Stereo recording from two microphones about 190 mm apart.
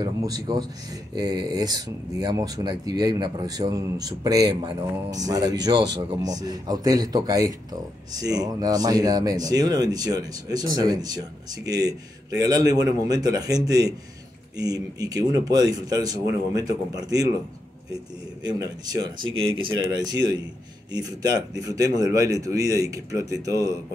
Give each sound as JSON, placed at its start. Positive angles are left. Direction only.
{"t": 0.0, "sound": "speech", "side_deg": -20}
{"t": 18.4, "sound": "speech", "side_deg": -20}